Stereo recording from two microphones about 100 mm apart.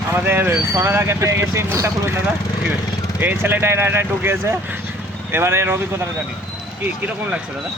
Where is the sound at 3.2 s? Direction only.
20° right (ahead or behind).